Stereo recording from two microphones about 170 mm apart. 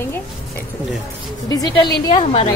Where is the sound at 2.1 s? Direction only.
35° left (ahead or behind).